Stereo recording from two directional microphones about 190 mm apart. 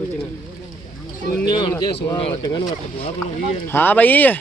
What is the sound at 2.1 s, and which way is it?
Speech, 30° left (ahead or behind).